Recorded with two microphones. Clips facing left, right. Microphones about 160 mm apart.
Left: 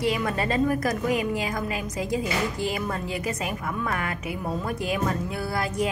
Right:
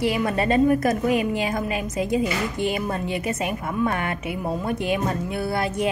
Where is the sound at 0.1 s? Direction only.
25° right (ahead or behind).